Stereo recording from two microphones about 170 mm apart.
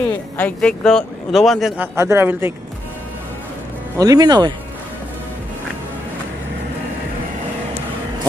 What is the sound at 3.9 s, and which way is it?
Speech, 20° right (ahead or behind).